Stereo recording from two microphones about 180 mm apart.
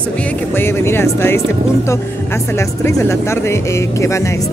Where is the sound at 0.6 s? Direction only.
15° left (ahead or behind).